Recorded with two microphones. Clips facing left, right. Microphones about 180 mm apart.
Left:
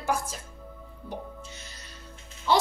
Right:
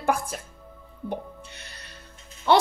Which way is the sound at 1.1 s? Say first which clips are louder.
Right 5 dB; 60° right (ahead or behind).